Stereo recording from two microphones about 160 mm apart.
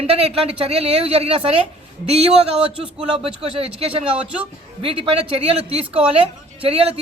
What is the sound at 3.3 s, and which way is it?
Speech, 40° right (ahead or behind).